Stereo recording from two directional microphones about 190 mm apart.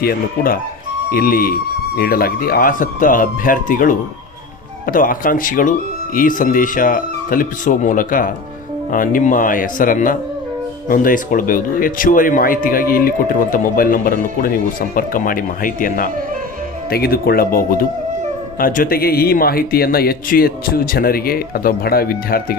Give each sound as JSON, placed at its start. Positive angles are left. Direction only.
{"t": 0.0, "sound": "speech", "side_deg": 50}